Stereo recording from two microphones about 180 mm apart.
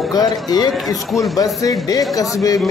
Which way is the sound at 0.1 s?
20° left (ahead or behind).